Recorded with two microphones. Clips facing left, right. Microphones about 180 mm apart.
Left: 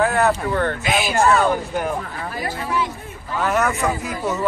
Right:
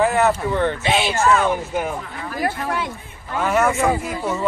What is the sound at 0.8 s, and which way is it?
Speech, 30° right (ahead or behind).